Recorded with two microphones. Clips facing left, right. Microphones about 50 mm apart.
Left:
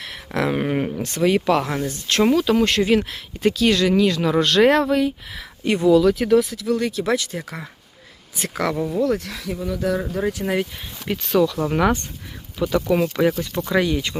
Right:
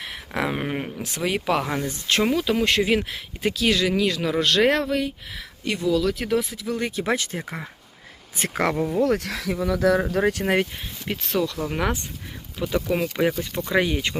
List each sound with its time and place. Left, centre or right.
0.0 s speech: centre
1.6 s speech: right
2.0 s speech: centre
5.6 s speech: left
6.1 s speech: centre
6.7 s speech: right
8.7 s speech: right
9.1 s speech: right
10.0 s speech: right
10.4 s speech: right
11.1 s speech: centre
13.7 s speech: right